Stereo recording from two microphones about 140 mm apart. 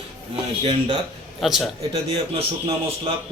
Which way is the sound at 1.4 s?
Centre (ahead or behind).